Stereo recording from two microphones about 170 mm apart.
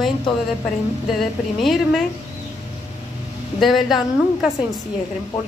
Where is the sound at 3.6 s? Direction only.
Centre (ahead or behind).